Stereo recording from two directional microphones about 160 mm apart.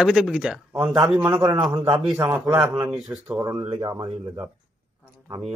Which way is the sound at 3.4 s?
20° right (ahead or behind).